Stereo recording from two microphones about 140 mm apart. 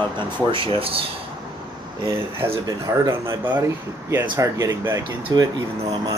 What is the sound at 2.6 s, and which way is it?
Speech, 25° right (ahead or behind).